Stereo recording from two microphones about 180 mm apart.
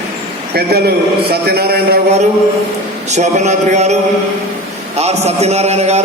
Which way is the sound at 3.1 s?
40° right (ahead or behind).